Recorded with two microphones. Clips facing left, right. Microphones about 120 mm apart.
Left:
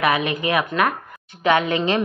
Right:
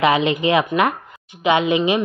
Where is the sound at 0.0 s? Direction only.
25° right (ahead or behind).